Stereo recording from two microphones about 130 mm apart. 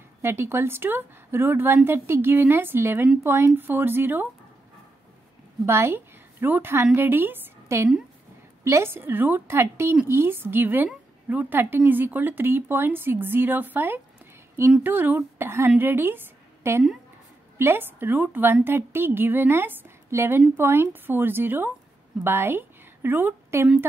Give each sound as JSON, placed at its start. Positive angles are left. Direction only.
{"t": 0.2, "sound": "a woman's voice", "side_deg": -20}
{"t": 5.7, "sound": "a woman's voice", "side_deg": -20}